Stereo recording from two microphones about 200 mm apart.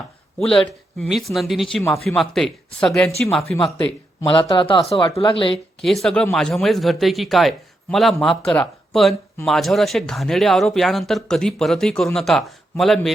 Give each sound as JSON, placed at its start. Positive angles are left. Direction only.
{"t": 0.3, "sound": "speech", "side_deg": 0}
{"t": 4.2, "sound": "speech", "side_deg": 20}
{"t": 5.8, "sound": "speech", "side_deg": 0}